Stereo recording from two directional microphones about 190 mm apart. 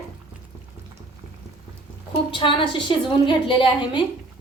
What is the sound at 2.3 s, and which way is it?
A woman's voice, 25° left (ahead or behind).